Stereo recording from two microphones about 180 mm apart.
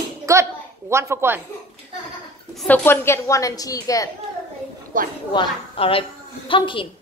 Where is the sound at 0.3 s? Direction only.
15° right (ahead or behind).